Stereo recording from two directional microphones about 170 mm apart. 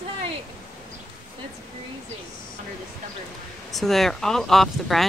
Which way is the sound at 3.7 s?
Centre (ahead or behind).